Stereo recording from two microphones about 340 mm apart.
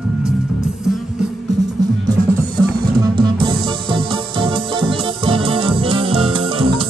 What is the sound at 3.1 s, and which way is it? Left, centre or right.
Music, centre.